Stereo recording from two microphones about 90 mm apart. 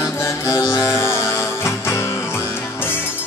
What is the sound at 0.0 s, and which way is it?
Music, 30° left (ahead or behind).